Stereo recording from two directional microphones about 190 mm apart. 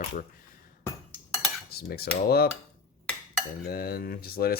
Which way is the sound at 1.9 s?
55° left (ahead or behind).